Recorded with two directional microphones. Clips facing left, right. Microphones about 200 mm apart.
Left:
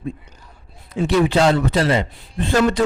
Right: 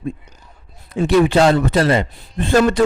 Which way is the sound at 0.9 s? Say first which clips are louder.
Right 3 dB; 50° right (ahead or behind).